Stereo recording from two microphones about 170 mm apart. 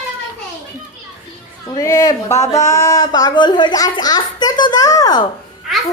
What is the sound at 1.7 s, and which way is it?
Speech, 20° left (ahead or behind).